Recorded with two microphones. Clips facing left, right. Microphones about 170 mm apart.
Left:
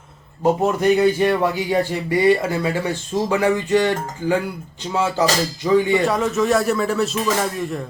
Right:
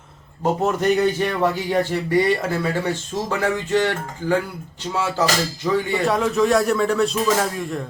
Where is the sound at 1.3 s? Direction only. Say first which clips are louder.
Left 2 dB; 10° left (ahead or behind).